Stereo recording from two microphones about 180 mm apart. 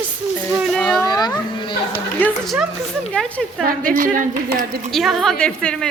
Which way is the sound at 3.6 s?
50° right (ahead or behind).